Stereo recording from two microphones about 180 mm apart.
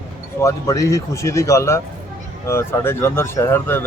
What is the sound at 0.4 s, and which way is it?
Speech, 15° left (ahead or behind).